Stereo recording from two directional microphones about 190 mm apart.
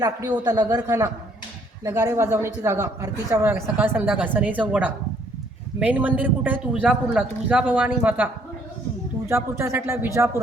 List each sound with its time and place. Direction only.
0.0 s a man's voice: 20° right (ahead or behind)
9.3 s speech: 15° right (ahead or behind)